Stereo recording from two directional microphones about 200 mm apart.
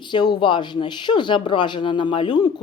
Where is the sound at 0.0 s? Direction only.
20° left (ahead or behind).